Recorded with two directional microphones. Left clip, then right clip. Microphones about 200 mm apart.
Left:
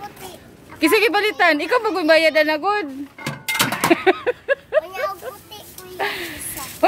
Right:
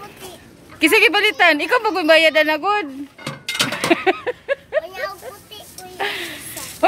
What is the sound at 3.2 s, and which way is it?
Cutlery, 55° left (ahead or behind).